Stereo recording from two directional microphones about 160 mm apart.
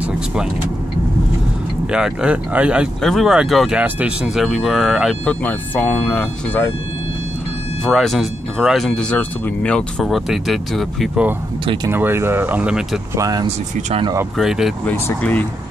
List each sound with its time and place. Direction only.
1.9 s speech: 5° right (ahead or behind); by 6.7 s 10° left (ahead or behind)
7.8 s speech: centre (ahead or behind)
11.6 s speech: 30° right (ahead or behind)
11.9 s speech: 15° right (ahead or behind)
13.1 s speech: 25° right (ahead or behind)
13.7 s speech: 45° right (ahead or behind)
14.3 s speech: centre (ahead or behind)
14.9 s speech: 10° left (ahead or behind)